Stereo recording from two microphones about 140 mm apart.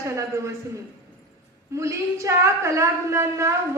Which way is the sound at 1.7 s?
20° right (ahead or behind).